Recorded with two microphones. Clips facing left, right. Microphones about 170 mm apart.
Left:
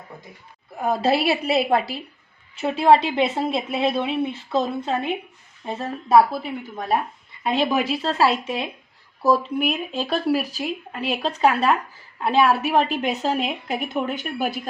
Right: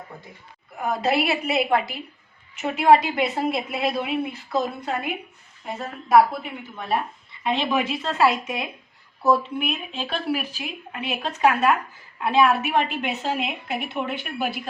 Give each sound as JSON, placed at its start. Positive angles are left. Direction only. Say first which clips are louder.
{"t": 0.8, "sound": "a woman's voice", "louder": "left 2 dB", "side_deg": 30}